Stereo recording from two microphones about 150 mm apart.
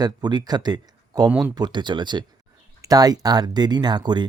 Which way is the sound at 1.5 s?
30° right (ahead or behind).